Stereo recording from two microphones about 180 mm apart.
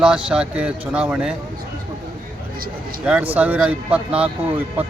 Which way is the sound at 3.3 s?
10° right (ahead or behind).